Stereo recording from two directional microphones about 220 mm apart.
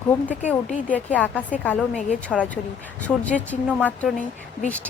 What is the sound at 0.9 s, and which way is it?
Speech, 5° left (ahead or behind).